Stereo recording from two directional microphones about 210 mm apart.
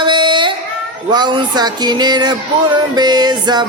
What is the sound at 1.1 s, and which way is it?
Music, 20° right (ahead or behind).